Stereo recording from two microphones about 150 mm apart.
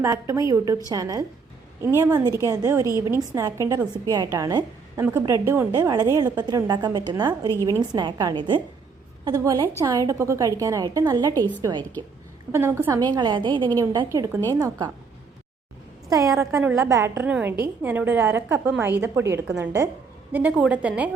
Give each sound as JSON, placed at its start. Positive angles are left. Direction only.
{"t": 0.0, "sound": "a woman's voice", "side_deg": -20}
{"t": 11.8, "sound": "a woman's voice", "side_deg": 10}
{"t": 12.5, "sound": "a woman's voice", "side_deg": -15}
{"t": 13.1, "sound": "a woman's voice", "side_deg": -30}
{"t": 16.0, "sound": "a woman's voice", "side_deg": -20}